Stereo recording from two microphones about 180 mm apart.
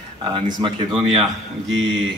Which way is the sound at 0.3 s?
25° right (ahead or behind).